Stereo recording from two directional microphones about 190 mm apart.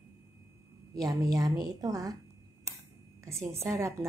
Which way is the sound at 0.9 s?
20° right (ahead or behind).